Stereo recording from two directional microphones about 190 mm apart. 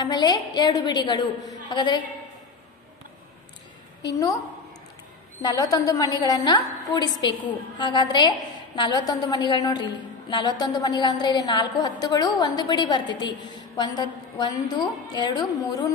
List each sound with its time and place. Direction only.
0.0 s a woman's voice: 20° left (ahead or behind)
4.1 s a woman's voice: 20° left (ahead or behind)
5.4 s a woman's voice: 20° left (ahead or behind)